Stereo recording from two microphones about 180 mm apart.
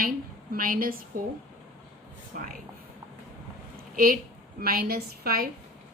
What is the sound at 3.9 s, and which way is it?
A woman's voice, 50° right (ahead or behind).